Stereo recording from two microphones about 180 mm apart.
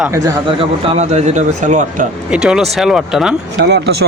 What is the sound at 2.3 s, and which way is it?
Speech, 5° right (ahead or behind).